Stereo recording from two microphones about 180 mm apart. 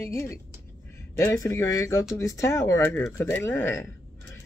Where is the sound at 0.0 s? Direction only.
15° left (ahead or behind).